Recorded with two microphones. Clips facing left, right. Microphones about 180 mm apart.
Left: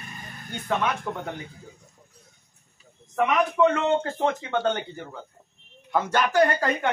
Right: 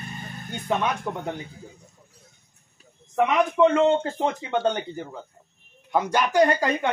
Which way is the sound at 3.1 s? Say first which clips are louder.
Right 1 dB; 15° right (ahead or behind).